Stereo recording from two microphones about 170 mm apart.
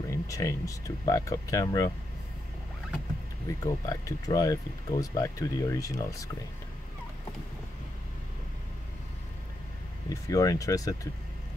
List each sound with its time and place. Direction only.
0.1 s speech: 20° left (ahead or behind)
3.6 s speech: 20° left (ahead or behind)
10.0 s speech: 20° left (ahead or behind)